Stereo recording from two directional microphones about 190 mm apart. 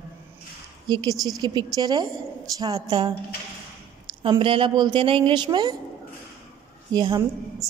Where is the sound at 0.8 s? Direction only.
20° right (ahead or behind).